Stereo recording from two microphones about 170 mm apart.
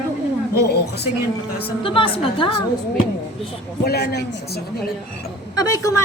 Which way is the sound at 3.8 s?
65° left (ahead or behind).